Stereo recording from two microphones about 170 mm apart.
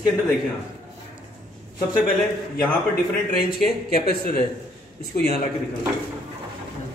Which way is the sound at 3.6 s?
65° left (ahead or behind).